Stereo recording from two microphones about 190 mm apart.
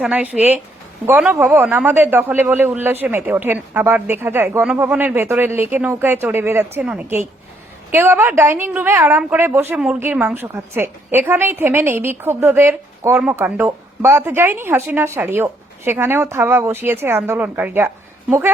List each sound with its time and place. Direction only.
0.0 s a man's voice: 5° right (ahead or behind)